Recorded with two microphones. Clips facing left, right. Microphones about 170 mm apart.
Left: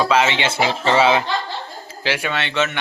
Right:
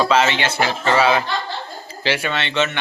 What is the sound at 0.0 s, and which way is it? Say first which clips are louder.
Speech: even; 10° left (ahead or behind).